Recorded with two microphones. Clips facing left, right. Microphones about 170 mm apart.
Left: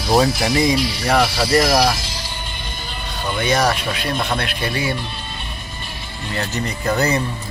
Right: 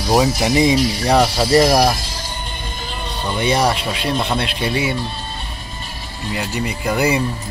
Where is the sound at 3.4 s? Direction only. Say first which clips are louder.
Right 1 dB; 30° right (ahead or behind).